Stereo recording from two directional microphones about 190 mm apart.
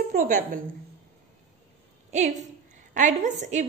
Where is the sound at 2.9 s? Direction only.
40° right (ahead or behind).